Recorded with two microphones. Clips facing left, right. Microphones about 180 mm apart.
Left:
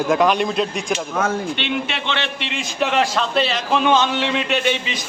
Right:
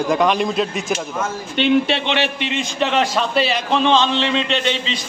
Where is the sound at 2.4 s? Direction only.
Centre (ahead or behind).